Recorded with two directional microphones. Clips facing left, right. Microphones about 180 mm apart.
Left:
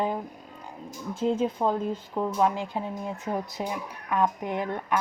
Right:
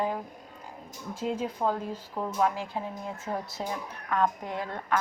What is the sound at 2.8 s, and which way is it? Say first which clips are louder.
A woman's voice: left 3 dB; 20° left (ahead or behind).